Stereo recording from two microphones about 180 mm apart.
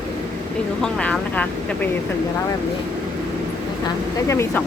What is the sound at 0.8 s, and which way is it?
Speech, 5° left (ahead or behind).